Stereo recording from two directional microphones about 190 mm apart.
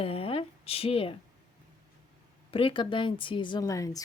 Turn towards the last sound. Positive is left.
turn(degrees=15)  # may be behind; listen again after turning